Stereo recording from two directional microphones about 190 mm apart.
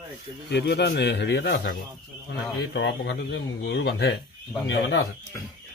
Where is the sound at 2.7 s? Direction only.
65° left (ahead or behind).